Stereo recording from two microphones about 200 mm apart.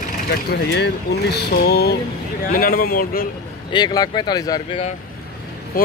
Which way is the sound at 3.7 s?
20° left (ahead or behind).